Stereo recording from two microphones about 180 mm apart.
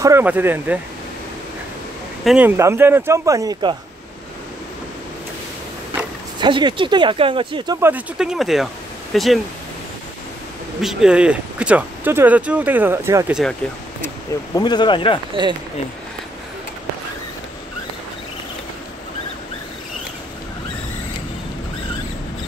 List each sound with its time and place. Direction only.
0.0 s speech: 10° right (ahead or behind)
2.2 s speech: 10° right (ahead or behind)
6.4 s speech: 25° right (ahead or behind)
7.9 s speech: 5° right (ahead or behind)
10.8 s speech: centre (ahead or behind)
14.0 s speech: 20° left (ahead or behind)
15.4 s speech: 25° right (ahead or behind)